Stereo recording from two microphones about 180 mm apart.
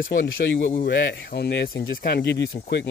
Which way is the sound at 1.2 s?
60° left (ahead or behind).